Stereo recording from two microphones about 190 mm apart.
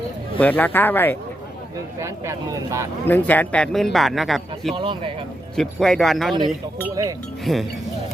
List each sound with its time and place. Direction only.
0.3 s speech: 10° left (ahead or behind)
2.0 s speech: 15° right (ahead or behind)
3.1 s speech: 10° left (ahead or behind)
4.7 s speech: 25° right (ahead or behind)
5.5 s speech: centre (ahead or behind)
7.5 s speech: centre (ahead or behind)